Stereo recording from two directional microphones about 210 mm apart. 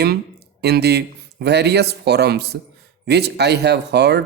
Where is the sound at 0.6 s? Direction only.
50° right (ahead or behind).